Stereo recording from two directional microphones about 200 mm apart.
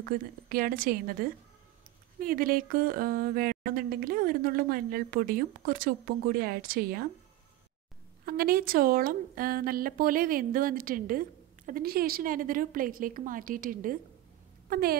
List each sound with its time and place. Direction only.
0.0 s a woman's voice: 45° right (ahead or behind)
8.3 s a woman's voice: 50° right (ahead or behind)